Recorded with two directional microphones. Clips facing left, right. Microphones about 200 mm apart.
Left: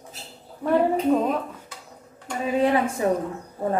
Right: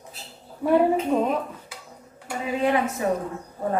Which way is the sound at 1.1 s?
Centre (ahead or behind).